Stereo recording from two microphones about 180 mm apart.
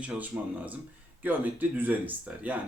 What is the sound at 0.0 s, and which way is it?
Speech, 5° right (ahead or behind).